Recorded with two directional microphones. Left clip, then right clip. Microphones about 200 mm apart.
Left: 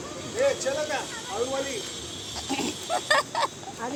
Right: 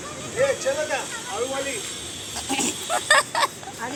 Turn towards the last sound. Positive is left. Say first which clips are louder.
# right 5 dB
turn(degrees=-15)  # may be behind; listen again after turning